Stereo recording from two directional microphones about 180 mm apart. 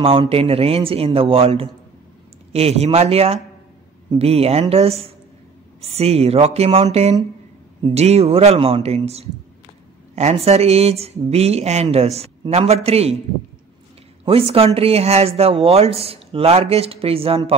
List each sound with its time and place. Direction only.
0.0 s speech: 30° right (ahead or behind)
14.2 s speech: 30° right (ahead or behind)